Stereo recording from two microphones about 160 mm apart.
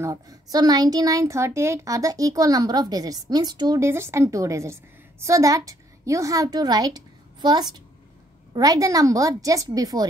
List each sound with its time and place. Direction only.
0.0 s speech: 20° right (ahead or behind)